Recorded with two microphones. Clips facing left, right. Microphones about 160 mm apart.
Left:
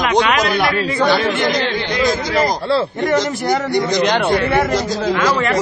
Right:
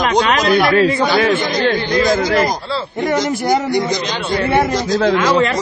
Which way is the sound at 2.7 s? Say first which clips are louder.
Left 6 dB; 65° left (ahead or behind).